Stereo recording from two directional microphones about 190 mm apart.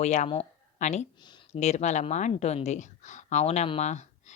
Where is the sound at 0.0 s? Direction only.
35° left (ahead or behind).